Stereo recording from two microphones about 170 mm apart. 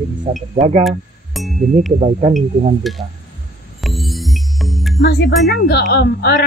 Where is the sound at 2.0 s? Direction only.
40° right (ahead or behind).